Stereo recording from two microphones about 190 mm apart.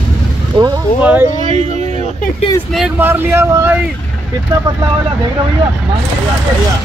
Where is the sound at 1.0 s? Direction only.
10° right (ahead or behind).